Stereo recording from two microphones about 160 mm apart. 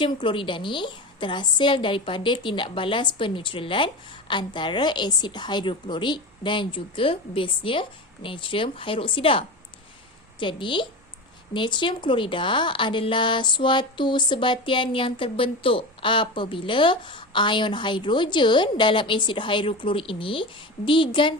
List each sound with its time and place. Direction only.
0.0 s speech: 30° left (ahead or behind)
10.4 s speech: 30° left (ahead or behind)